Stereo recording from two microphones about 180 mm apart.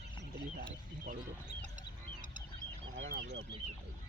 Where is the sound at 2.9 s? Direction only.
70° right (ahead or behind).